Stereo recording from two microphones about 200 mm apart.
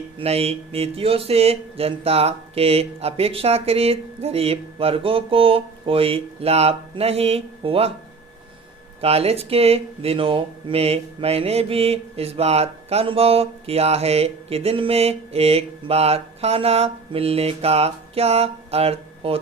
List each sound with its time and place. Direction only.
0.2 s speech: 30° right (ahead or behind)
9.0 s speech: 30° right (ahead or behind)